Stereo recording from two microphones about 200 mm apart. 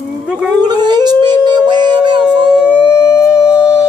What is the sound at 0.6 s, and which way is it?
Howl, 20° right (ahead or behind).